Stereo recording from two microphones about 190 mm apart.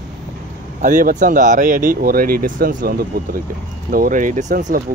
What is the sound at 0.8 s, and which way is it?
Speech, 45° right (ahead or behind).